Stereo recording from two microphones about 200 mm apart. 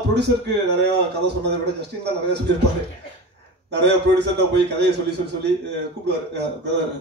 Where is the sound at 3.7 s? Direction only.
60° right (ahead or behind).